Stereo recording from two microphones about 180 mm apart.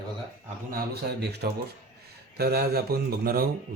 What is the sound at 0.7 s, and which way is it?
Speech, 60° right (ahead or behind).